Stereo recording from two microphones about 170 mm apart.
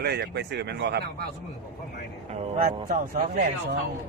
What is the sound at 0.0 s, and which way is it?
Speech, 75° right (ahead or behind).